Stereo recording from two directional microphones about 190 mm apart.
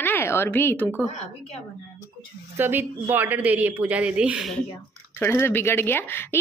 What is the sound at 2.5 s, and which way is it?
A woman's voice, 10° right (ahead or behind).